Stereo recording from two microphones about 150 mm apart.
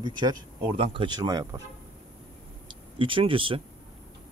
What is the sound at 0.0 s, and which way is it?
Speech, 35° right (ahead or behind).